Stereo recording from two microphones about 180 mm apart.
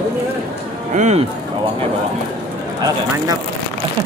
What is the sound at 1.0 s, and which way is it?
Speech, 40° right (ahead or behind).